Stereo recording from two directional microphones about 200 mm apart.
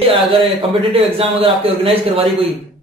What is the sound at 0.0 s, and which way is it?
A man's voice, 30° right (ahead or behind).